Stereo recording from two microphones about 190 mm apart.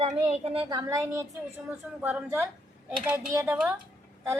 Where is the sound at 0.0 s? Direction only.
30° right (ahead or behind).